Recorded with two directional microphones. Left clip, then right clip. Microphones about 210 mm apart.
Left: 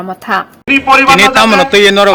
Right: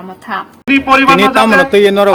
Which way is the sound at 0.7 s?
55° right (ahead or behind).